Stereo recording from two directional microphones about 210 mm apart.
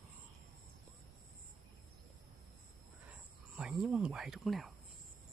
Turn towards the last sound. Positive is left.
turn(degrees=0)  # may be behind; listen again after turning